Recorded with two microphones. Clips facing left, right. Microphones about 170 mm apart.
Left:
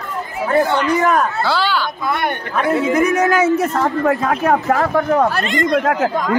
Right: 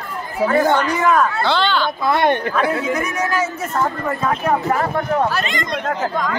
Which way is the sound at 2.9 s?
55° left (ahead or behind).